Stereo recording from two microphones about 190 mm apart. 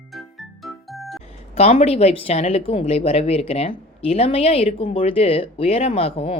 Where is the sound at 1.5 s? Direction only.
30° left (ahead or behind).